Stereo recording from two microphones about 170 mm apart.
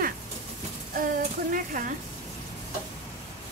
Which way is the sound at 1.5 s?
55° right (ahead or behind).